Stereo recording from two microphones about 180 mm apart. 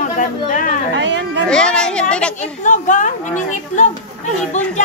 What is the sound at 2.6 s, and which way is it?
Speech, 45° left (ahead or behind).